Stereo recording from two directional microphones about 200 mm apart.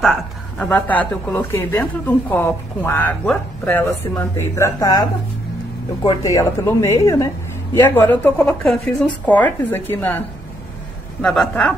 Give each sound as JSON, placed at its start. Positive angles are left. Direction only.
{"t": 0.0, "sound": "speech", "side_deg": 5}
{"t": 6.0, "sound": "a woman's voice", "side_deg": 15}